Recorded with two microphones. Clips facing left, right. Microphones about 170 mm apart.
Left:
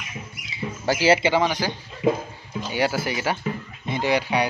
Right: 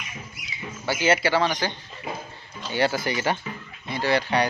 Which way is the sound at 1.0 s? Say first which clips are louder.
Left 3 dB; 30° left (ahead or behind).